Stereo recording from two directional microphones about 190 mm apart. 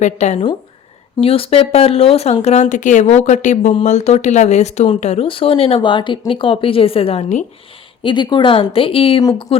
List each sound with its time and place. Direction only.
0.0 s speech: 35° left (ahead or behind)
8.0 s speech: 25° left (ahead or behind)